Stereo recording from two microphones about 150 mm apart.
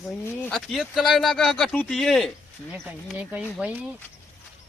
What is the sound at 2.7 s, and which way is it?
Speech, 10° right (ahead or behind).